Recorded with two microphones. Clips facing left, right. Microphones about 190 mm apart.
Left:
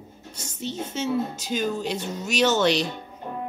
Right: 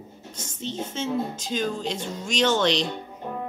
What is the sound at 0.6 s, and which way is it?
A woman's voice, 10° left (ahead or behind).